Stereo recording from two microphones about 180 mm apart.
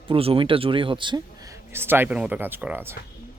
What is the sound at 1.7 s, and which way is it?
Speech, 10° right (ahead or behind).